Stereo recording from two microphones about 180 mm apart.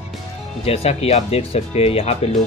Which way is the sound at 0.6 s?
35° left (ahead or behind).